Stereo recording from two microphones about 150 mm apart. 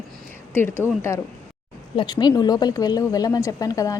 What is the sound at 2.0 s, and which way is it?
Speech, 30° left (ahead or behind).